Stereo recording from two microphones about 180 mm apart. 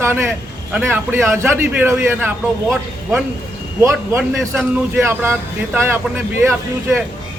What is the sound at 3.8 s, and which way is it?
A man's voice, 15° right (ahead or behind).